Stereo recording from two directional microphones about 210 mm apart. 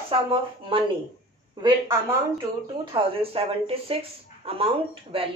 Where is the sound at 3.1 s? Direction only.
25° right (ahead or behind).